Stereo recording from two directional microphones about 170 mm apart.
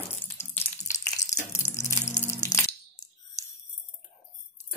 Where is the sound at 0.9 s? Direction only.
45° left (ahead or behind).